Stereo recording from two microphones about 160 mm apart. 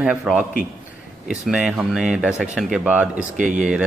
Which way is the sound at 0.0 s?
5° right (ahead or behind).